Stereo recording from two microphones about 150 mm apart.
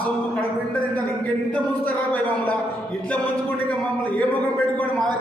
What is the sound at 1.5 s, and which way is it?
A man's voice, 10° left (ahead or behind).